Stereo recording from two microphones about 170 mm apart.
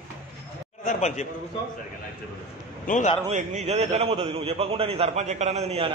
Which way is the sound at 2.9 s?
45° left (ahead or behind).